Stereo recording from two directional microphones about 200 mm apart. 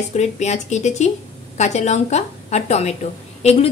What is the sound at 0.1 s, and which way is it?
A woman's voice, 35° left (ahead or behind).